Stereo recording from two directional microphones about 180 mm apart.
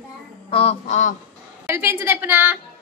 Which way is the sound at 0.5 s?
35° left (ahead or behind).